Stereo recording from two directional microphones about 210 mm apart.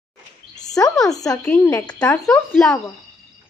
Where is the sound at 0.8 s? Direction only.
Centre (ahead or behind).